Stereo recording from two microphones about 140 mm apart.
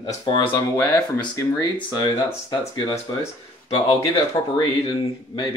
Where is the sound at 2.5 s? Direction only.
35° left (ahead or behind).